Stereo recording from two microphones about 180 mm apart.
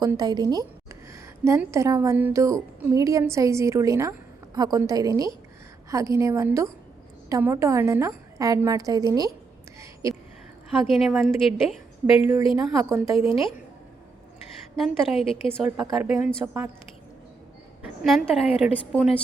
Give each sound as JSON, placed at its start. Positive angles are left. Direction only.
{"t": 0.0, "sound": "a woman's voice", "side_deg": -20}
{"t": 9.8, "sound": "a sound", "side_deg": -20}
{"t": 10.7, "sound": "a woman's voice", "side_deg": 0}
{"t": 12.2, "sound": "a woman's voice", "side_deg": -15}
{"t": 13.1, "sound": "a woman's voice", "side_deg": 30}
{"t": 14.8, "sound": "a woman's voice", "side_deg": 0}
{"t": 17.8, "sound": "a woman's voice", "side_deg": 0}